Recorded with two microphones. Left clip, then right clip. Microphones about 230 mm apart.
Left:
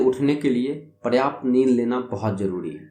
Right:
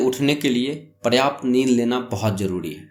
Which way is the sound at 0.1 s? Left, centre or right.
Right.